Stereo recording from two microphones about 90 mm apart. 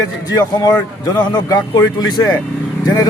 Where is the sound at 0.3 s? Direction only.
45° left (ahead or behind).